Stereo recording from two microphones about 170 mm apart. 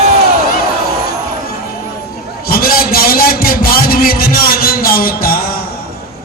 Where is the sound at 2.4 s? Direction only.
60° left (ahead or behind).